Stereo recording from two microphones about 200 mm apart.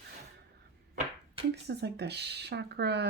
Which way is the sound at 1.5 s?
55° right (ahead or behind).